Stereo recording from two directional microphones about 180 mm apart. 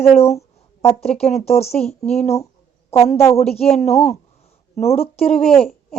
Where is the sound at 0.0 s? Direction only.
35° left (ahead or behind).